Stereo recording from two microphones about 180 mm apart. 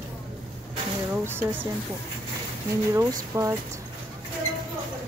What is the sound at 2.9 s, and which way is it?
Speech, 15° right (ahead or behind).